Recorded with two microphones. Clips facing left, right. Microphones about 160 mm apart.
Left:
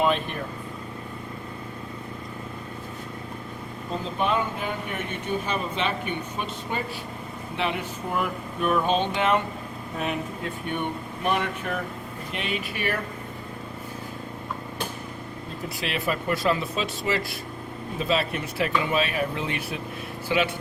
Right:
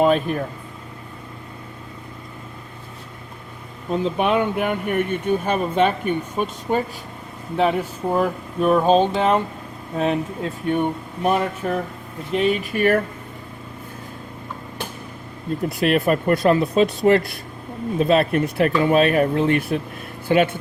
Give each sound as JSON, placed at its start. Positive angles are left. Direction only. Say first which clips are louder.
{"t": 3.9, "sound": "speech", "louder": "right 6 dB", "side_deg": -65}
{"t": 15.8, "sound": "speech", "louder": "right 10 dB", "side_deg": -50}